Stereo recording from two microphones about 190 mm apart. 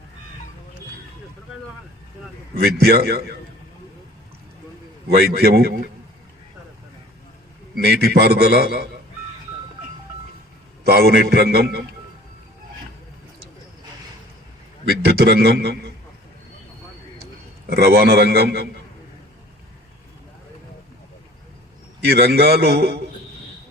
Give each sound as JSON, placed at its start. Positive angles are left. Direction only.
{"t": 2.6, "sound": "a man's voice", "side_deg": -55}
{"t": 5.0, "sound": "a man's voice", "side_deg": -55}
{"t": 7.8, "sound": "a man's voice", "side_deg": -55}
{"t": 10.8, "sound": "a man's voice", "side_deg": -55}
{"t": 14.8, "sound": "a man's voice", "side_deg": -60}
{"t": 17.7, "sound": "a man's voice", "side_deg": -55}
{"t": 22.0, "sound": "a man's voice", "side_deg": -55}